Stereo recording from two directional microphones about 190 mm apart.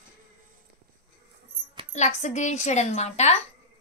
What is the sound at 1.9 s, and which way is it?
A woman's voice, 35° left (ahead or behind).